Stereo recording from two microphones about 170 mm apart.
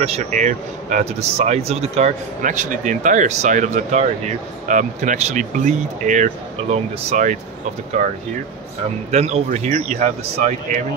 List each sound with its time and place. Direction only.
0.0 s speech: 40° right (ahead or behind)